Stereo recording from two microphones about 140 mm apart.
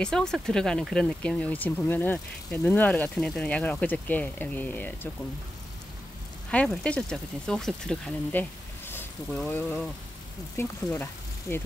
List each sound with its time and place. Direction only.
0.0 s speech: 5° left (ahead or behind)
6.5 s speech: 10° left (ahead or behind)